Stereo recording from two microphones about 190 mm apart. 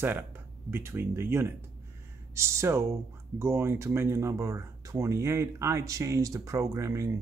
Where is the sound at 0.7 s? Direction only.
10° right (ahead or behind).